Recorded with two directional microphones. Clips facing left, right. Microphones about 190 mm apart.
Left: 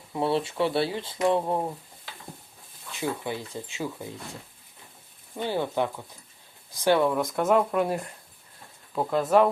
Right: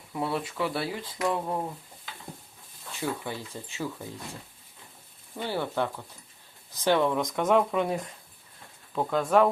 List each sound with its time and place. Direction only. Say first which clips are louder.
0.1 s speech: left 5 dB; 30° left (ahead or behind)
3.0 s speech: left 2 dB; 15° left (ahead or behind)
5.4 s speech: left 2 dB; 15° left (ahead or behind)